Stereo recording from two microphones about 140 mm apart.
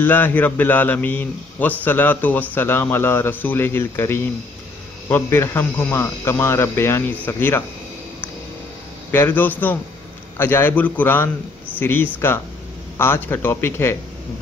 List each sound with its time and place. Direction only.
0.0 s a man's voice: 15° left (ahead or behind)
9.1 s a man's voice: 15° left (ahead or behind)